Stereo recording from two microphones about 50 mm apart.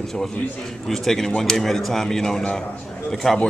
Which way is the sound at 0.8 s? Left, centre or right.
Centre.